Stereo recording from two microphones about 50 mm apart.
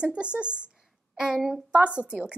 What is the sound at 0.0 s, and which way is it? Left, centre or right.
A woman's voice, right.